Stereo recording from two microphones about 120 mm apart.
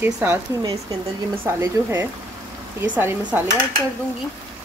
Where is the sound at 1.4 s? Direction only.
20° right (ahead or behind).